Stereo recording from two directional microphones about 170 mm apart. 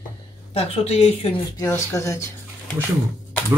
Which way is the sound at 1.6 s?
15° left (ahead or behind).